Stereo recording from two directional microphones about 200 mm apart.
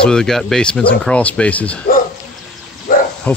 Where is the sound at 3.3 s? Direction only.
10° left (ahead or behind).